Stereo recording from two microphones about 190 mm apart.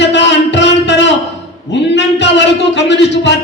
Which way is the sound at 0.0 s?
70° left (ahead or behind).